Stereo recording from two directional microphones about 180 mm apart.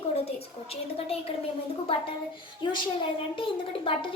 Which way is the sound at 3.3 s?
30° left (ahead or behind).